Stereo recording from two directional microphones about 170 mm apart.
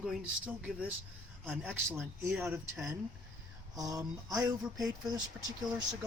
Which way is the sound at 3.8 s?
20° right (ahead or behind).